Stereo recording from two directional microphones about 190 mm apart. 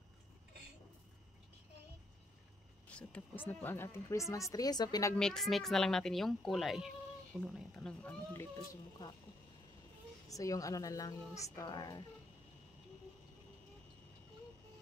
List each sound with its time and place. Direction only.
2.9 s speech: 5° left (ahead or behind)
5.1 s speech: 5° left (ahead or behind)
10.3 s speech: 15° left (ahead or behind)